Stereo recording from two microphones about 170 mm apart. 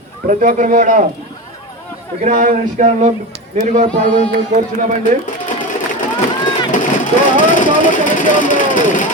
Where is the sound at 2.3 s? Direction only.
50° right (ahead or behind).